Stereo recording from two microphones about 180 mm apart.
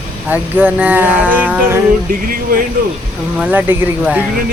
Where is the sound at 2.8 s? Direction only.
50° right (ahead or behind).